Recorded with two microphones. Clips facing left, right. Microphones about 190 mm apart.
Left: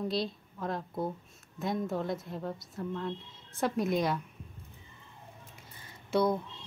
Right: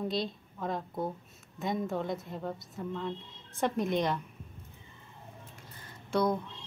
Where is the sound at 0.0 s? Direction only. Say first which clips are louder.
Even; centre (ahead or behind).